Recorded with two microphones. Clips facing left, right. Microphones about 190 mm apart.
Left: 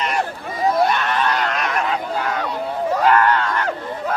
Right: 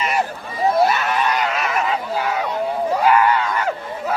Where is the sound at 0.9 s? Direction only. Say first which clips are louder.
Even; 5° right (ahead or behind).